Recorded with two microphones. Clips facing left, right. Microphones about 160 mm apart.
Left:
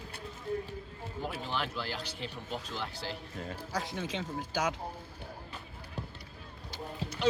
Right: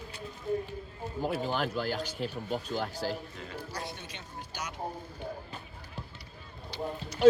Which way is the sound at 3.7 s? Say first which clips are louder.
Left 5 dB; 90° left.